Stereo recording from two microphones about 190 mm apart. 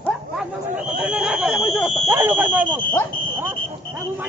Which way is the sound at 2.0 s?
10° right (ahead or behind).